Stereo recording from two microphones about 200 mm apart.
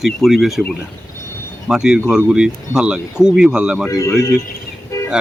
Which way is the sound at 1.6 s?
5° right (ahead or behind).